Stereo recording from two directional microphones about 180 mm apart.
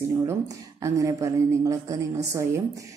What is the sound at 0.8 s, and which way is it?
Speech, 20° right (ahead or behind).